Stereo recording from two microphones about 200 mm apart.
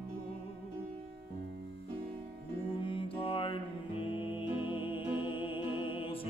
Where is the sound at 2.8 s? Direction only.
25° left (ahead or behind).